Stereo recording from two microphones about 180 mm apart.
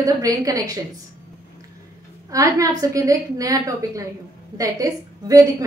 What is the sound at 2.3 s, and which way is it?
A woman's voice, 20° right (ahead or behind).